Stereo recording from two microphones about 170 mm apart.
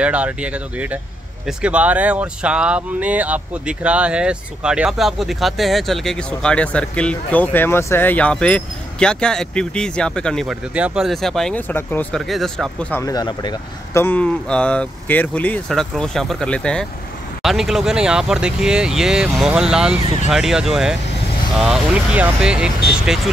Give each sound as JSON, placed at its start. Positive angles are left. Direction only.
{"t": 0.0, "sound": "speech", "side_deg": -5}
{"t": 13.0, "sound": "speech", "side_deg": 25}
{"t": 14.0, "sound": "speech", "side_deg": 10}